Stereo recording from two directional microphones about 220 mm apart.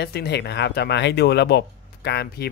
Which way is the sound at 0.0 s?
50° left (ahead or behind).